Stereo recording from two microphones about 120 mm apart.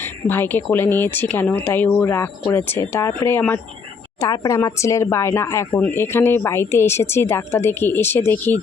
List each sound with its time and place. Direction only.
0.0 s speech: 15° left (ahead or behind)
4.2 s speech: 30° left (ahead or behind)